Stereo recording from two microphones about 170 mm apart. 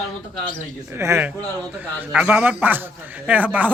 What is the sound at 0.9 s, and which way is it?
A man's voice, 15° right (ahead or behind).